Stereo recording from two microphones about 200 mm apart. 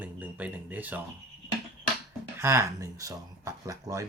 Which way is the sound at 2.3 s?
15° right (ahead or behind).